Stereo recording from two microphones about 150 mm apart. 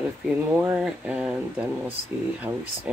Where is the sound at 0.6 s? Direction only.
10° right (ahead or behind).